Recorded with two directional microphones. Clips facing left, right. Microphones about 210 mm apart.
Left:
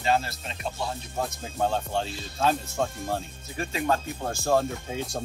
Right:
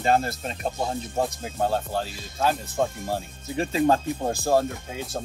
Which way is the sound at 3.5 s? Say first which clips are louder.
Right 6 dB; 35° right (ahead or behind).